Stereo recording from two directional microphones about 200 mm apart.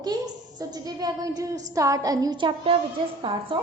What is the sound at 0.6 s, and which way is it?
A woman's voice, 20° right (ahead or behind).